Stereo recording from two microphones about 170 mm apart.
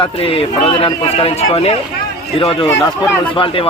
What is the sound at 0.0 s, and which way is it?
A man's voice, 35° left (ahead or behind).